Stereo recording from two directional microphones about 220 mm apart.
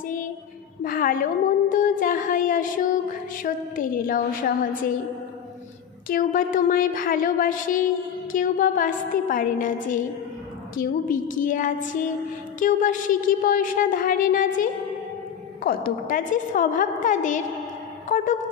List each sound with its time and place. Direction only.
0.8 s a woman's voice: 40° left (ahead or behind)
1.7 s music: 35° left (ahead or behind)
6.0 s music: 40° left (ahead or behind)
18.0 s speech: 35° left (ahead or behind)